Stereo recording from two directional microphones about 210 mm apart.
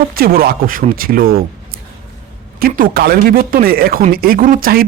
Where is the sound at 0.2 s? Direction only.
45° right (ahead or behind).